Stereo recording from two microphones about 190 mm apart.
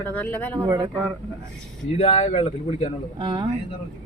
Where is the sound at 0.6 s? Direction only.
20° right (ahead or behind).